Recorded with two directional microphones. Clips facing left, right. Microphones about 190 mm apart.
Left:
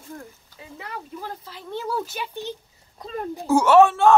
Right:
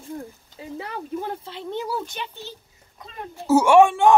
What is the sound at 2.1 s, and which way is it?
Speech, 5° left (ahead or behind).